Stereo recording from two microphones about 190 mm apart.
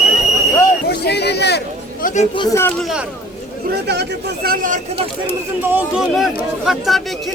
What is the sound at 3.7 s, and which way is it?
Speech, 60° right (ahead or behind).